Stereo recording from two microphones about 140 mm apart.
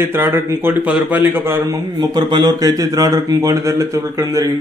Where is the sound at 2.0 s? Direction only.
30° right (ahead or behind).